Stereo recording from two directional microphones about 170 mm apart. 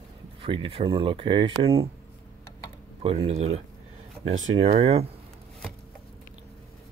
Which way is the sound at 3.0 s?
35° right (ahead or behind).